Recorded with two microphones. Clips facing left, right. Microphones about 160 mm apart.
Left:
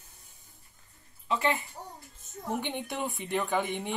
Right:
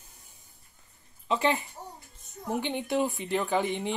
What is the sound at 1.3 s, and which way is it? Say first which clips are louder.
Speech: right 2 dB; 20° right (ahead or behind).